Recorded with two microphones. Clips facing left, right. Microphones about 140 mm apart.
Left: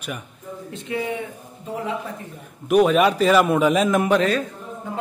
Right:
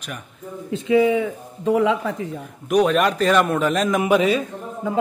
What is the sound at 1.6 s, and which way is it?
Speech, 90° right.